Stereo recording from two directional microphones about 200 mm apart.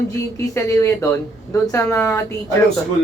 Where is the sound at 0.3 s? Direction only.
15° left (ahead or behind).